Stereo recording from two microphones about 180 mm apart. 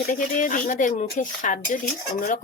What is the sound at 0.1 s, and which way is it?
A woman's voice, 45° left (ahead or behind).